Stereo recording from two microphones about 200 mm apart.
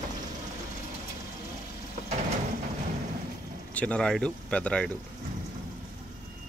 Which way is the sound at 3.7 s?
5° left (ahead or behind).